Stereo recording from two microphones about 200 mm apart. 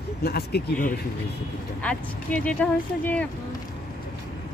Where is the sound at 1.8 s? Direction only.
5° left (ahead or behind).